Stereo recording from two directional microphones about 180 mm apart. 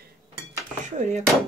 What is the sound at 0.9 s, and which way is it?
Speech, 40° right (ahead or behind).